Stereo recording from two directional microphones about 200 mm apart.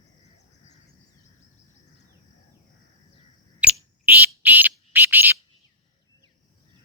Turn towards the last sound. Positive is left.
turn(degrees=-10)  # may be behind; listen again after turning